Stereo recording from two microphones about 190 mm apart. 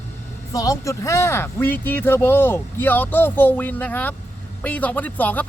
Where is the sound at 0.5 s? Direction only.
20° left (ahead or behind).